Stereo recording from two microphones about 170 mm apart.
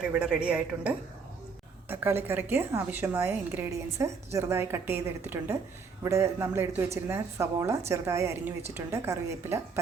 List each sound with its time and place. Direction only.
0.1 s a woman's voice: 5° right (ahead or behind)